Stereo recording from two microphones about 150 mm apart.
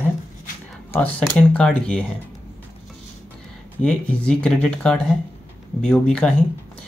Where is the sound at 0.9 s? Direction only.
10° left (ahead or behind).